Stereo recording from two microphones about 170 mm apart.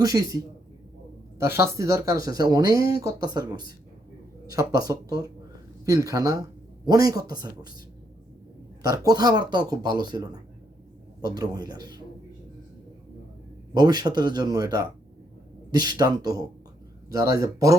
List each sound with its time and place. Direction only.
0.0 s speech: 20° right (ahead or behind)
8.8 s speech: 20° right (ahead or behind)
13.7 s speech: 25° right (ahead or behind)